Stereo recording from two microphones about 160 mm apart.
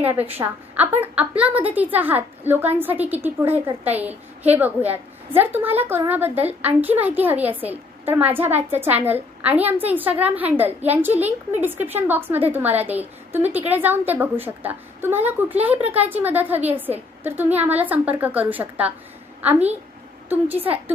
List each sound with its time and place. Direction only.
0.0 s a woman's voice: 10° right (ahead or behind)
20.2 s a woman's voice: 10° right (ahead or behind)